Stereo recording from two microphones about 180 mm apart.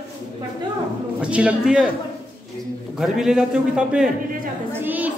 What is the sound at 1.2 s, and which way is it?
Speech, 5° right (ahead or behind).